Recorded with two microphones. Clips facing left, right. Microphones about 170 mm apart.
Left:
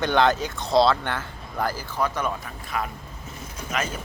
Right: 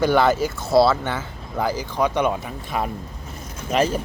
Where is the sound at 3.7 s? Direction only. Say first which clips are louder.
Right 9 dB; 30° right (ahead or behind).